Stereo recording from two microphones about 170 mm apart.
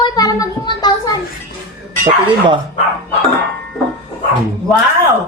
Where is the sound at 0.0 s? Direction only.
20° left (ahead or behind).